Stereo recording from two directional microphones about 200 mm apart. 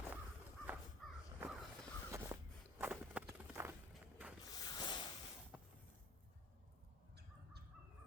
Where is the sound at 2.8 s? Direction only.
5° right (ahead or behind).